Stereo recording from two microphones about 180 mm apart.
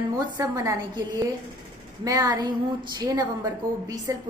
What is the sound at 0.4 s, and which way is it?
A woman's voice, 20° right (ahead or behind).